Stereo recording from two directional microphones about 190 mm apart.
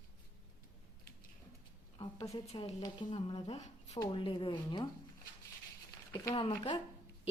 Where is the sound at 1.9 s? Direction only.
35° left (ahead or behind).